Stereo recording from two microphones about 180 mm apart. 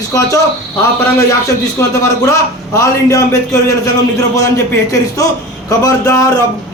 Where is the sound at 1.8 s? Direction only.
15° left (ahead or behind).